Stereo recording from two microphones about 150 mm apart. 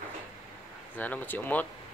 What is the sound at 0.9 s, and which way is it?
Speech, 10° left (ahead or behind).